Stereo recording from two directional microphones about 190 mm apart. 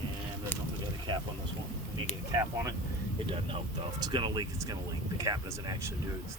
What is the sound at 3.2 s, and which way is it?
Speech, 30° right (ahead or behind).